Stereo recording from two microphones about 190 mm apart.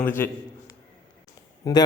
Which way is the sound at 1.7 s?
20° left (ahead or behind).